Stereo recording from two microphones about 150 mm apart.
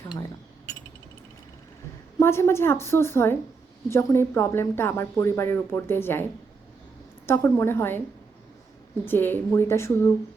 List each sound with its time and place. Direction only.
2.1 s speech: 15° left (ahead or behind)
7.3 s speech: 15° left (ahead or behind)
9.0 s speech: 15° left (ahead or behind)